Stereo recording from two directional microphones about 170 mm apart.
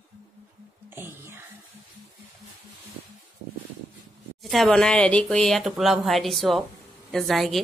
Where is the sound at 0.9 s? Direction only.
15° right (ahead or behind).